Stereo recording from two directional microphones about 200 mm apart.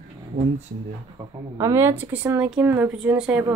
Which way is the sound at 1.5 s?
15° right (ahead or behind).